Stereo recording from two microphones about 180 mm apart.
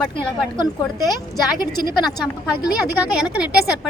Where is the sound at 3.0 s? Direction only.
5° right (ahead or behind).